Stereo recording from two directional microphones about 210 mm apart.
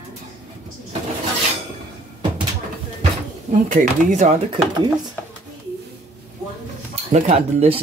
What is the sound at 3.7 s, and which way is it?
Speech, 35° right (ahead or behind).